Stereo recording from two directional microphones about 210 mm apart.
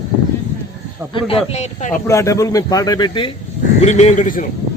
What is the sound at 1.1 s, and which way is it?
Speech, 25° left (ahead or behind).